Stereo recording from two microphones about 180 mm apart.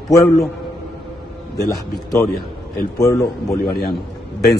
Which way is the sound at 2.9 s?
15° left (ahead or behind).